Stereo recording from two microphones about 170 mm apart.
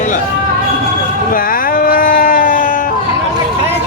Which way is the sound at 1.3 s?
55° left (ahead or behind).